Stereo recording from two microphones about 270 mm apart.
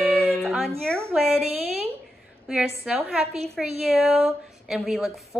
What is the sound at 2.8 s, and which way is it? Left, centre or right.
Speech, centre.